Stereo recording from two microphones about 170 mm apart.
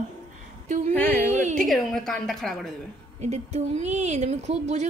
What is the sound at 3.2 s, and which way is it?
Speech, 40° right (ahead or behind).